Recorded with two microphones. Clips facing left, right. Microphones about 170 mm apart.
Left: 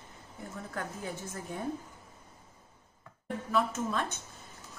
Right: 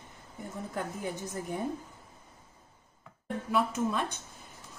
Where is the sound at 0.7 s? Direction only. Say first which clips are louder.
Right 3 dB; 15° right (ahead or behind).